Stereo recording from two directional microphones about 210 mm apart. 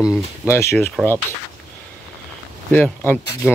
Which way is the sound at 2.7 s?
5° left (ahead or behind).